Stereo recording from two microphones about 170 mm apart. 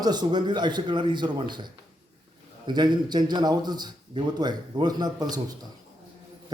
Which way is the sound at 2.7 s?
25° right (ahead or behind).